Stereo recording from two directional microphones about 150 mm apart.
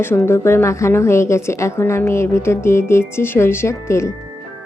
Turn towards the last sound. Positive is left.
turn(degrees=20)  # may be behind; listen again after turning